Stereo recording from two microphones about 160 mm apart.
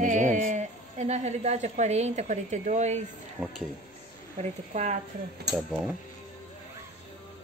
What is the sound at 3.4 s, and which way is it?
Speech, 15° right (ahead or behind).